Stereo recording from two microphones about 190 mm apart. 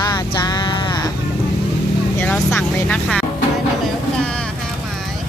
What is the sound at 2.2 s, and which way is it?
Speech, 10° left (ahead or behind).